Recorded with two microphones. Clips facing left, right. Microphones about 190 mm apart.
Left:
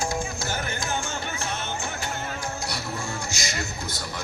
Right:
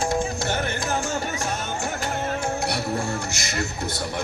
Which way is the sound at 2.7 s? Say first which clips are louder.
Right 6 dB; 60° right (ahead or behind).